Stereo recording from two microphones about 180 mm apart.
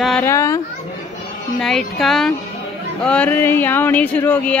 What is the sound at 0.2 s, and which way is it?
Speech, 15° left (ahead or behind).